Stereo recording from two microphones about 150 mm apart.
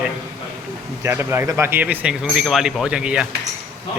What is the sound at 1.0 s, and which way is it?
Speech, 15° right (ahead or behind).